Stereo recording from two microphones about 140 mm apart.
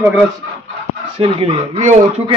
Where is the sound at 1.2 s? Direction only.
40° right (ahead or behind).